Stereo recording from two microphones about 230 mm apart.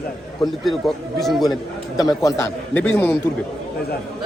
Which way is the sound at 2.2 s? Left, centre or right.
Centre.